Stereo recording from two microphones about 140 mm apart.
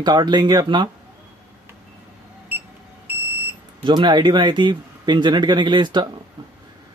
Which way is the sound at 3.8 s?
35° right (ahead or behind).